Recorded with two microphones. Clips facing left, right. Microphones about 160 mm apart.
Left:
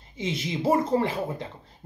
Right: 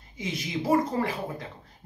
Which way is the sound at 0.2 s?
25° left (ahead or behind).